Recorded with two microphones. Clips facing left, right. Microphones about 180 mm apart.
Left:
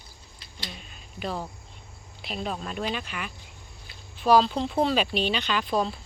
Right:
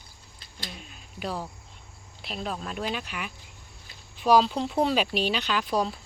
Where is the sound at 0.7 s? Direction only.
5° right (ahead or behind).